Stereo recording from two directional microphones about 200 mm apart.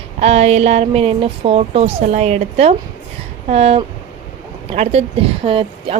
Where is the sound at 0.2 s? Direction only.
30° right (ahead or behind).